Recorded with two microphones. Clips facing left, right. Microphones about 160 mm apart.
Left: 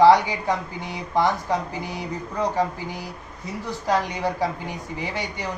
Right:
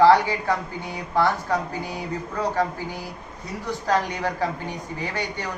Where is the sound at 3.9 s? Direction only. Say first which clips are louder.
Left 1 dB; 10° left (ahead or behind).